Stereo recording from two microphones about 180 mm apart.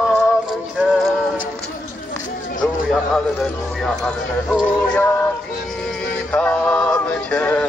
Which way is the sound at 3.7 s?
5° left (ahead or behind).